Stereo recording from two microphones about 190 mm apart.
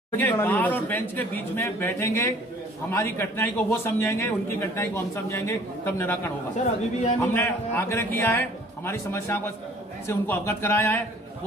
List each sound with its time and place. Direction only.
0.2 s a man's voice: 10° left (ahead or behind)